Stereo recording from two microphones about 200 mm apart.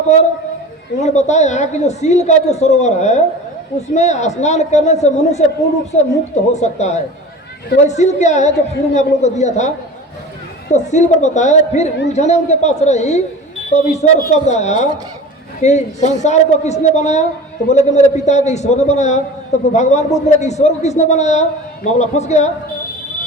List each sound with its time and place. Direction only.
0.9 s a woman's voice: 35° left (ahead or behind)